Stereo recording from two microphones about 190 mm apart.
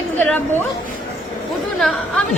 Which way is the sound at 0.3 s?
10° left (ahead or behind).